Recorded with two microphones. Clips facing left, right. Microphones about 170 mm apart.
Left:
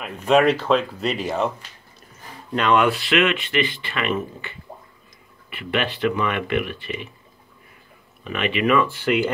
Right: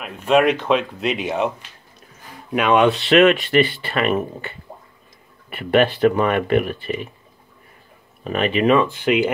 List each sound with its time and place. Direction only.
0.0 s speech: 5° right (ahead or behind)
0.9 s speech: centre (ahead or behind)
2.5 s speech: 15° right (ahead or behind)
3.1 s speech: 40° right (ahead or behind)
8.2 s speech: 40° right (ahead or behind)
8.7 s speech: 20° right (ahead or behind)